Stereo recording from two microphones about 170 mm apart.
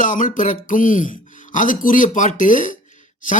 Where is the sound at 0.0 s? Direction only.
50° left (ahead or behind).